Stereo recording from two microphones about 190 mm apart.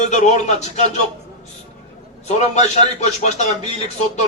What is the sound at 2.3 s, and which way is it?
A man's voice, 35° left (ahead or behind).